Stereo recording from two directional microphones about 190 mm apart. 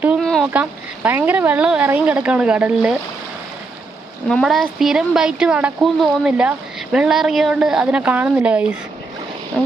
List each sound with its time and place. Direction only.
0.0 s speech: 5° right (ahead or behind)
4.3 s speech: centre (ahead or behind)
9.5 s speech: 5° left (ahead or behind)